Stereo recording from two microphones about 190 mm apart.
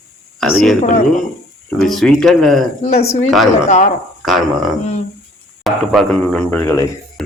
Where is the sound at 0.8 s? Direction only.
45° left (ahead or behind).